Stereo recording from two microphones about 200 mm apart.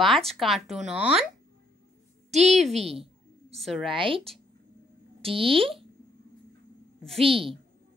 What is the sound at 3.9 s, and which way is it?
Speech, 25° right (ahead or behind).